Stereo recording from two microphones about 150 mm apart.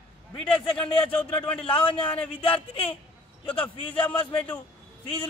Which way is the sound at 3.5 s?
10° left (ahead or behind).